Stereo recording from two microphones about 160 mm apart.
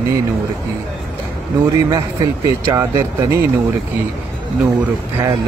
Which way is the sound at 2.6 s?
15° right (ahead or behind).